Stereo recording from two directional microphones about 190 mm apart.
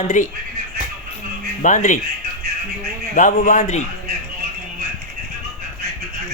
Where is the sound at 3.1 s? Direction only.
45° left (ahead or behind).